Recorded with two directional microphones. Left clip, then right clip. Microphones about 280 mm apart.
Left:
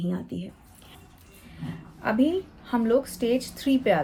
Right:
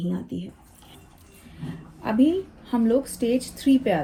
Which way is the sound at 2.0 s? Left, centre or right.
Left.